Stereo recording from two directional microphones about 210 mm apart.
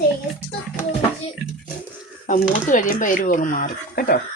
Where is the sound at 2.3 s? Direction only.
40° left (ahead or behind).